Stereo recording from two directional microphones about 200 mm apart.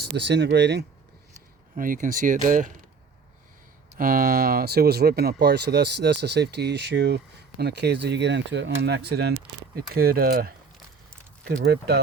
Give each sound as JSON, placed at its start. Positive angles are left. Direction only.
{"t": 0.2, "sound": "speech", "side_deg": -60}
{"t": 1.7, "sound": "speech", "side_deg": -40}
{"t": 3.9, "sound": "speech", "side_deg": -45}